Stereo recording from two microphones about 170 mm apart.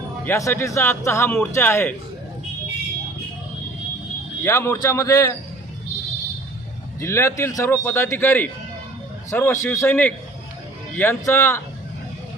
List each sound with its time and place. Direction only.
0.2 s a man's voice: 15° left (ahead or behind)
4.4 s a man's voice: 15° left (ahead or behind)
7.0 s a man's voice: 15° left (ahead or behind)